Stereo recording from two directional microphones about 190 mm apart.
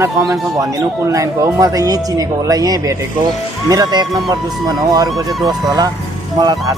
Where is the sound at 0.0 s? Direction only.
15° right (ahead or behind).